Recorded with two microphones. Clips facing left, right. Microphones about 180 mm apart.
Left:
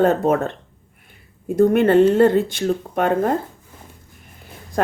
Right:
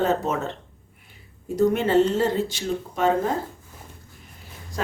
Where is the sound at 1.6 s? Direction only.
55° left (ahead or behind).